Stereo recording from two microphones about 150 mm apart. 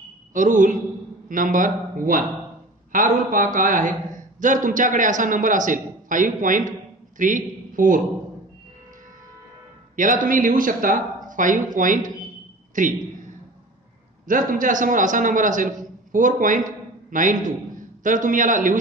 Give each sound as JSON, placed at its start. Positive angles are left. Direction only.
{"t": 0.3, "sound": "a man's voice", "side_deg": -60}
{"t": 9.9, "sound": "a man's voice", "side_deg": -60}
{"t": 12.7, "sound": "a sound", "side_deg": -60}
{"t": 14.2, "sound": "a man's voice", "side_deg": -65}